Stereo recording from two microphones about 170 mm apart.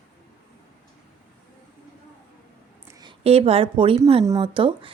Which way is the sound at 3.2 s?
35° right (ahead or behind).